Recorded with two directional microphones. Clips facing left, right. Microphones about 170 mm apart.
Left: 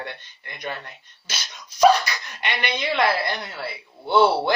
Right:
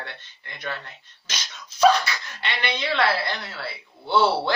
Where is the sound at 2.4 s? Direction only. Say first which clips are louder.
Left 2 dB; 15° left (ahead or behind).